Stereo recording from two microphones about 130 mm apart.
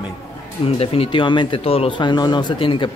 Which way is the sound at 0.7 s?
45° left (ahead or behind).